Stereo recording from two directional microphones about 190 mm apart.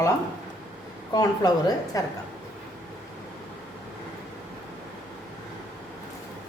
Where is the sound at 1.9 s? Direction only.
15° left (ahead or behind).